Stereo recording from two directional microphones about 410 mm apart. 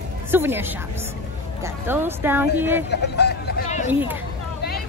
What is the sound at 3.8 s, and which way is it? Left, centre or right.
Speech, centre.